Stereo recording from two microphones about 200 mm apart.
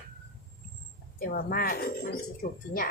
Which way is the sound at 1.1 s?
50° left (ahead or behind).